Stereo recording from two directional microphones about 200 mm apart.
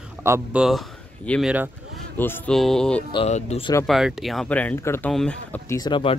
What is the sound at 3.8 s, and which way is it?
Speech, centre (ahead or behind).